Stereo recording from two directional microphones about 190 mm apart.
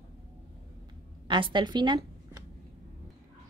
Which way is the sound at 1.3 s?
25° right (ahead or behind).